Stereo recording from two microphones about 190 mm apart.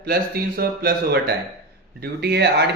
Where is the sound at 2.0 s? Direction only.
60° right (ahead or behind).